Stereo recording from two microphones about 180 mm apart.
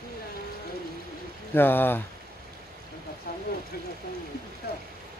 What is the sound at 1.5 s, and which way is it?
Speech, 10° left (ahead or behind).